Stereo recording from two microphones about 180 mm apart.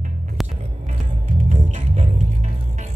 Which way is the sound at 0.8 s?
40° right (ahead or behind).